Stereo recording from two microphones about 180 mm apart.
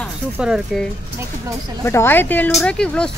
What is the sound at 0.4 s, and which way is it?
Speech, 5° right (ahead or behind).